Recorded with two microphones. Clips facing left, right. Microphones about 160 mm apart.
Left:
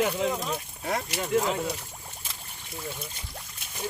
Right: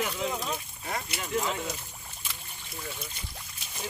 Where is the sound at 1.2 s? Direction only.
40° left (ahead or behind).